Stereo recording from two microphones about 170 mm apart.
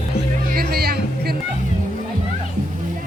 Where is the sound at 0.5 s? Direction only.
65° right (ahead or behind).